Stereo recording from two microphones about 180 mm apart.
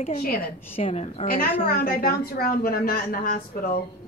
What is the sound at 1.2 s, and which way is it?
A woman's voice, 55° left (ahead or behind).